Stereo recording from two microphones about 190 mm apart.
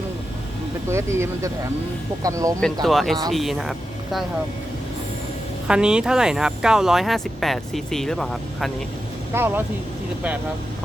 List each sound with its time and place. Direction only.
0.9 s speech: 15° right (ahead or behind)
2.8 s speech: centre (ahead or behind)
5.6 s speech: 5° right (ahead or behind)
9.3 s speech: 10° right (ahead or behind)